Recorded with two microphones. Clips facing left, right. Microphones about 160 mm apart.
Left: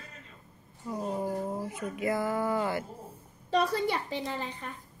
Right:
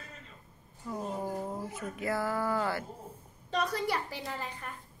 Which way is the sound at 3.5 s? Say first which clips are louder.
Left 4 dB; 30° left (ahead or behind).